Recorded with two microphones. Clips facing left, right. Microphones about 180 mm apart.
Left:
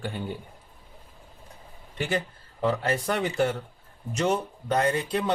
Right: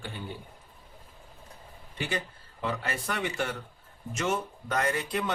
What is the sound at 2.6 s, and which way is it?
Speech, 35° left (ahead or behind).